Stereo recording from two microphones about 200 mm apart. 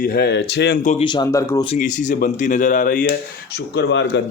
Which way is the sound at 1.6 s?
40° left (ahead or behind).